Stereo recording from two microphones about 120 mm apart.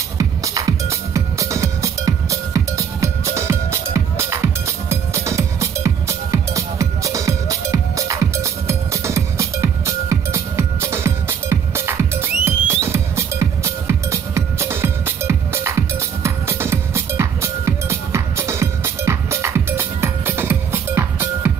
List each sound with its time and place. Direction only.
0.2 s music: 30° right (ahead or behind)